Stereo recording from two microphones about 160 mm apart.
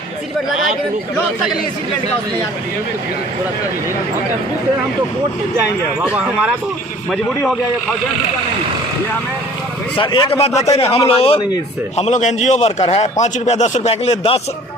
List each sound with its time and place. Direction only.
6.0 s speech: 5° right (ahead or behind)
10.0 s a man's voice: 30° left (ahead or behind)